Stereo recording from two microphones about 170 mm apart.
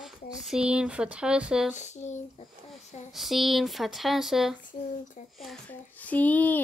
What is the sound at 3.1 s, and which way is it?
A child's voice, centre (ahead or behind).